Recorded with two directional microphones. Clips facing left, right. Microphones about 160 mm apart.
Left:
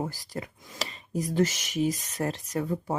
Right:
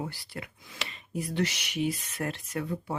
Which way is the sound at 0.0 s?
40° left (ahead or behind).